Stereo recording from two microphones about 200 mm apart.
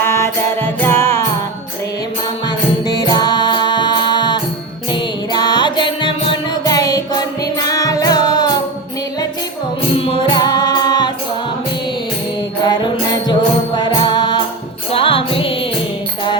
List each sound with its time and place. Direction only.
0.0 s music: 15° left (ahead or behind)
2.5 s music: 20° left (ahead or behind)
9.9 s music: 25° left (ahead or behind)
12.6 s music: 20° left (ahead or behind)